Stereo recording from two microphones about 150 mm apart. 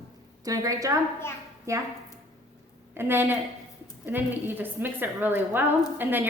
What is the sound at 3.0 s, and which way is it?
A woman's voice, 15° right (ahead or behind).